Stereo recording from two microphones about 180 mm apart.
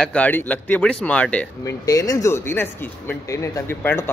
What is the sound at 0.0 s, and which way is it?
Speech, 5° left (ahead or behind).